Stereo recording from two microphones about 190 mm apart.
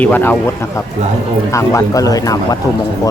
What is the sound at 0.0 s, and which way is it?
Speech, 10° left (ahead or behind).